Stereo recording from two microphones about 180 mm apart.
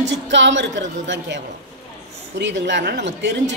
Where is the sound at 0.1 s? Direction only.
80° right.